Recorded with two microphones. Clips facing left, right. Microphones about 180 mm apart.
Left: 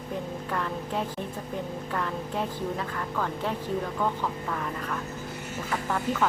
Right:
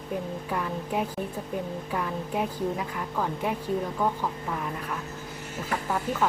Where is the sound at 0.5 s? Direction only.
10° right (ahead or behind).